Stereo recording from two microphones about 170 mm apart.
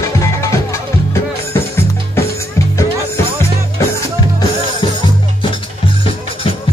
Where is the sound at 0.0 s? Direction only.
20° left (ahead or behind).